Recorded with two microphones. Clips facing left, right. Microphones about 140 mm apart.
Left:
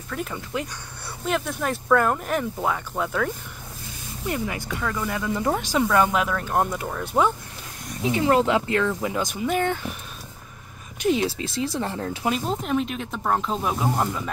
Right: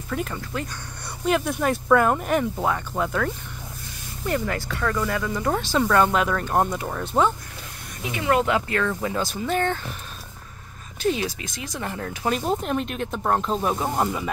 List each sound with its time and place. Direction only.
0.1 s speech: centre (ahead or behind)
0.4 s speech: 15° left (ahead or behind)
1.2 s speech: 5° right (ahead or behind)
4.3 s speech: 15° left (ahead or behind)
5.8 s speech: 5° left (ahead or behind)
8.0 s speech: 30° left (ahead or behind); by 9.9 s 15° left (ahead or behind)
11.0 s speech: 20° left (ahead or behind)
11.2 s speech: 30° left (ahead or behind)
12.4 s speech: centre (ahead or behind)